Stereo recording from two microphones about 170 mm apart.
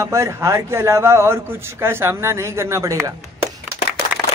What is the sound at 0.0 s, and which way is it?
A man's voice, 15° right (ahead or behind).